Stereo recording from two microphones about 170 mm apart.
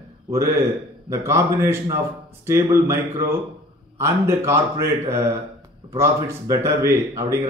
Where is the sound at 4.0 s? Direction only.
15° right (ahead or behind).